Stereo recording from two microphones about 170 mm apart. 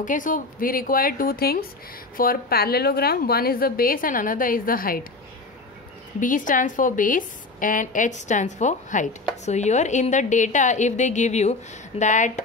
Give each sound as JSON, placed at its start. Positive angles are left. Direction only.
{"t": 0.0, "sound": "a woman's voice", "side_deg": 50}
{"t": 6.1, "sound": "a woman's voice", "side_deg": 50}